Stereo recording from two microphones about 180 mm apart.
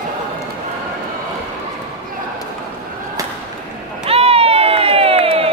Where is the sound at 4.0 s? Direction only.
35° right (ahead or behind).